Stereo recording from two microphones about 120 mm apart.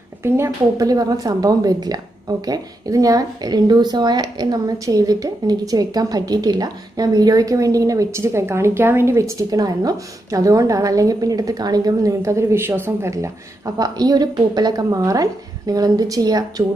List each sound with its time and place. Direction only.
0.2 s a woman's voice: 25° right (ahead or behind)